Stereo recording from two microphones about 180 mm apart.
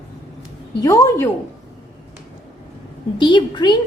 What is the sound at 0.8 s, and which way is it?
Speech, 20° left (ahead or behind).